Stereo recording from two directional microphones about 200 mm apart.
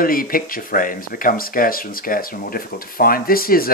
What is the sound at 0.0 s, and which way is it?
Speech, 45° left (ahead or behind).